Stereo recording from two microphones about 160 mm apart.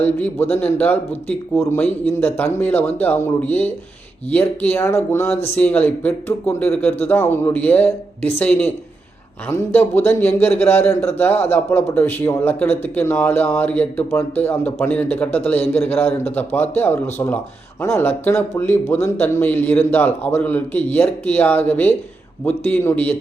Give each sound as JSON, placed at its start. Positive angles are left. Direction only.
{"t": 0.0, "sound": "speech", "side_deg": 10}